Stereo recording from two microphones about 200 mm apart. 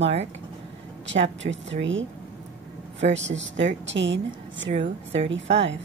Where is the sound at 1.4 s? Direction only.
65° right (ahead or behind).